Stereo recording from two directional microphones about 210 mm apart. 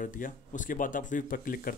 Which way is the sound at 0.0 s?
40° left (ahead or behind).